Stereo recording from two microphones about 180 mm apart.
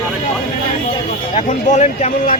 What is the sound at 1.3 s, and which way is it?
Speech, 40° left (ahead or behind).